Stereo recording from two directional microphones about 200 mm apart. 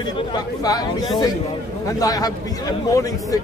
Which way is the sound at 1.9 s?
20° left (ahead or behind).